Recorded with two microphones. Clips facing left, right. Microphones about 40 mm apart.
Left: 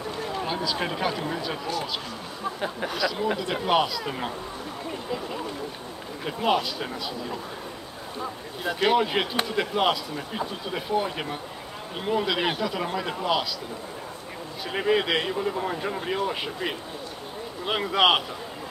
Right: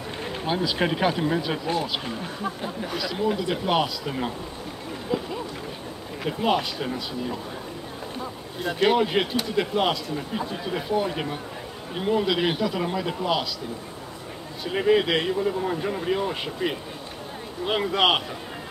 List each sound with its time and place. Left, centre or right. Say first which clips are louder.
0.5 s speech: right 7 dB; centre
1.7 s speech: right 3 dB; right
2.9 s a man's voice: right 2 dB; centre
5.1 s a man's voice: right 5 dB; centre
8.8 s a man's voice: right 2 dB; centre
14.6 s a man's voice: right 3 dB; centre